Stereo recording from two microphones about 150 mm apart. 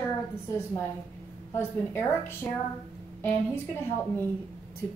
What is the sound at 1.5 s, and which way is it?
A woman's voice, 15° left (ahead or behind).